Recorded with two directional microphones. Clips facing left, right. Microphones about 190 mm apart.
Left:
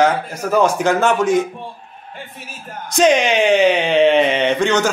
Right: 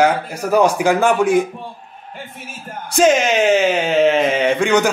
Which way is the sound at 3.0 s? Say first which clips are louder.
Even; 5° right (ahead or behind).